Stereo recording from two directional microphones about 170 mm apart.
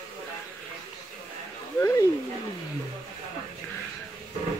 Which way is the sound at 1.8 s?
15° left (ahead or behind).